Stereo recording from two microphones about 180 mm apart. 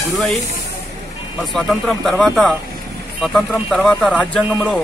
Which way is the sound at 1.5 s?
Centre (ahead or behind).